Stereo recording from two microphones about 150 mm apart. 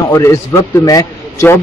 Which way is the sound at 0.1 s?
20° left (ahead or behind).